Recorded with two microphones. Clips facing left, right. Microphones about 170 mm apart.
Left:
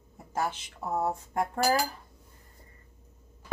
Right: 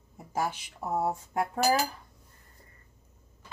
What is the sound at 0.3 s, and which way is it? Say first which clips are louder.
Speech: even; 10° right (ahead or behind).